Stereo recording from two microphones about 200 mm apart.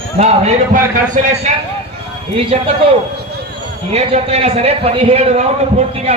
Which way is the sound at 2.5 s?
30° right (ahead or behind).